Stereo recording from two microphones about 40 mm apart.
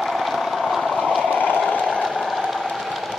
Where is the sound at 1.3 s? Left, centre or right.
Left.